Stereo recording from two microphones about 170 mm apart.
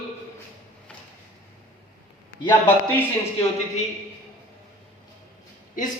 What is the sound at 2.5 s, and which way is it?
Speech, 10° left (ahead or behind).